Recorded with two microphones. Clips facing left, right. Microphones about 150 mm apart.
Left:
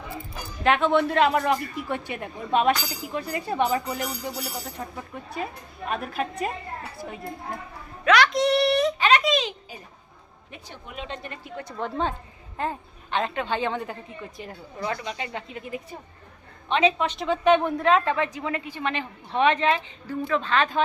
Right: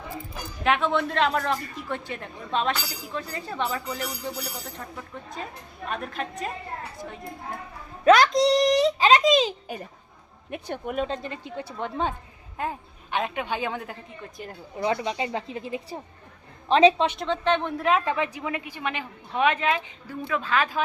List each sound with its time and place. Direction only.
0.6 s a man's voice: centre (ahead or behind)
8.5 s a woman's voice: 35° right (ahead or behind)
9.0 s a woman's voice: 25° right (ahead or behind)
10.5 s speech: 55° right (ahead or behind)
11.1 s a woman's voice: 30° right (ahead or behind)
11.8 s a woman's voice: 5° right (ahead or behind)
14.8 s a woman's voice: 25° right (ahead or behind)
17.2 s a man's voice: 10° left (ahead or behind)
17.7 s a woman's voice: 10° right (ahead or behind)